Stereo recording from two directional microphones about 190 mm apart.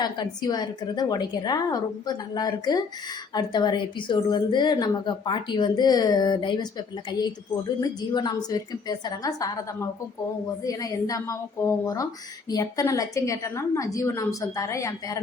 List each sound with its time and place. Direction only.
0.0 s a woman's voice: 20° left (ahead or behind)
10.6 s a woman's voice: 20° left (ahead or behind)